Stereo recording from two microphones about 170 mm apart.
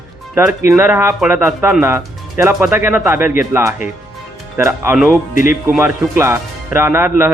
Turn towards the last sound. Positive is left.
turn(degrees=-15)  # may be behind; listen again after turning